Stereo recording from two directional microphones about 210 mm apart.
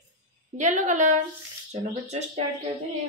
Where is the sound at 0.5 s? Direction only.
35° right (ahead or behind).